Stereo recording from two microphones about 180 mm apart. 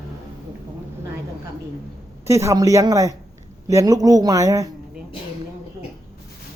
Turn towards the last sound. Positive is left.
turn(degrees=-20)  # may be behind; listen again after turning